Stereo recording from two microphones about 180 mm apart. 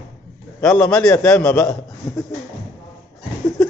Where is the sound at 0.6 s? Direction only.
Centre (ahead or behind).